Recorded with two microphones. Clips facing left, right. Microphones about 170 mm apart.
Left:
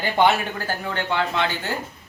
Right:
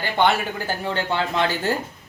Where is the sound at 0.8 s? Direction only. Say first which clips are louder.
Right 1 dB; 35° right (ahead or behind).